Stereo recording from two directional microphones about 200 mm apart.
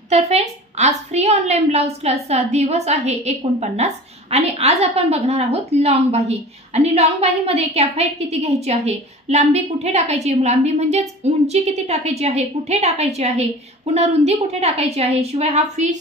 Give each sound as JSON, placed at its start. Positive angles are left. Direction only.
{"t": 0.1, "sound": "a woman's voice", "side_deg": -30}